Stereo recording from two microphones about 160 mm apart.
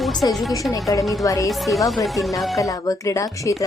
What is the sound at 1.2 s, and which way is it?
Speech, 20° left (ahead or behind).